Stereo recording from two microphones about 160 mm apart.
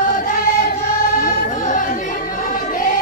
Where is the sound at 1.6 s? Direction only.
55° left (ahead or behind).